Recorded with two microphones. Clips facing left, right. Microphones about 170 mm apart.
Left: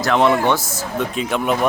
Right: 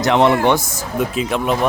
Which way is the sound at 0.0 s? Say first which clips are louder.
Right 2 dB; 20° right (ahead or behind).